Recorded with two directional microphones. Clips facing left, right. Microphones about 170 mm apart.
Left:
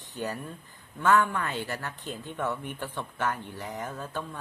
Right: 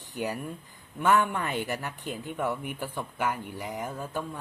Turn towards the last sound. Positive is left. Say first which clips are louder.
# right 2 dB
turn(degrees=-10)  # may be behind; listen again after turning